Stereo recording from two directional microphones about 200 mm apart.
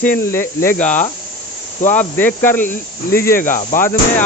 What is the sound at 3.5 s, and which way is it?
Speech, 40° left (ahead or behind).